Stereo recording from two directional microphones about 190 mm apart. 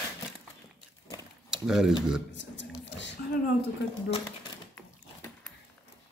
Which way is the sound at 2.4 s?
70° left (ahead or behind).